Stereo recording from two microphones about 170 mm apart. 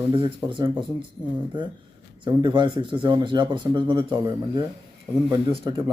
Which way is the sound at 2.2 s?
30° right (ahead or behind).